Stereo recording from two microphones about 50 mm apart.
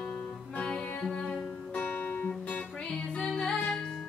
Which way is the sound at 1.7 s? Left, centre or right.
Left.